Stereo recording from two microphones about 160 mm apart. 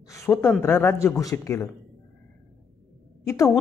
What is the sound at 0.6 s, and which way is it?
A man's voice, 15° left (ahead or behind).